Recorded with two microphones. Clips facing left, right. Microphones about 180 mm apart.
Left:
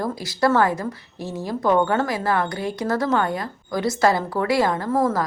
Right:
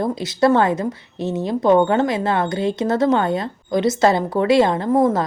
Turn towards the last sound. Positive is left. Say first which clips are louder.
# right 4 dB
turn(degrees=-20)  # may be behind; listen again after turning